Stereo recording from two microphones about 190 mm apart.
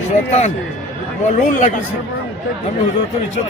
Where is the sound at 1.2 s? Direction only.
40° left (ahead or behind).